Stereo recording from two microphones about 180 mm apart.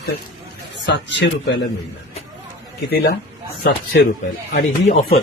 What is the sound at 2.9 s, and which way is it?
Speech, 60° left (ahead or behind).